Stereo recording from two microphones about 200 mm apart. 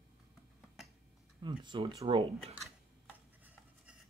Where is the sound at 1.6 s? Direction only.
25° right (ahead or behind).